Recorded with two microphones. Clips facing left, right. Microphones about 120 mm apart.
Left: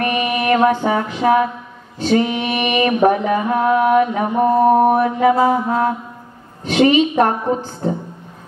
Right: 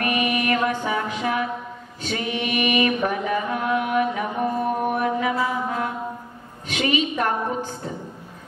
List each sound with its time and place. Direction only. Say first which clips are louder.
0.0 s music: left 4 dB; 35° left (ahead or behind)
2.0 s mantra: left 11 dB; 35° left (ahead or behind)
5.3 s music: left 9 dB; 45° left (ahead or behind)
6.6 s a woman's voice: left 10 dB; 35° left (ahead or behind)